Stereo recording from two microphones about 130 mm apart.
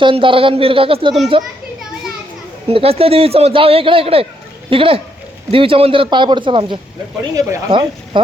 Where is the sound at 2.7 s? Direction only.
50° right (ahead or behind).